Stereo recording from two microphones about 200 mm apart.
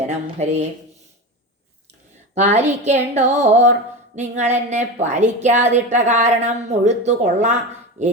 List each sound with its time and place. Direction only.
0.0 s a woman's voice: 35° right (ahead or behind)
2.3 s a woman's voice: 35° right (ahead or behind)